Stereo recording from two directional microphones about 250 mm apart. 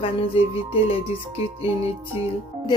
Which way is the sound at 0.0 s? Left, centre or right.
Left.